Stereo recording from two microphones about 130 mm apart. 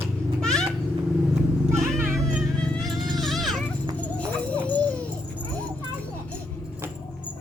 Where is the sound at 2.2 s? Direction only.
5° left (ahead or behind).